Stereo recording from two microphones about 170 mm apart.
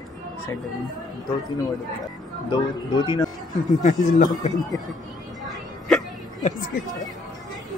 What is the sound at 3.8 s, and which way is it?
Speech, 50° left (ahead or behind).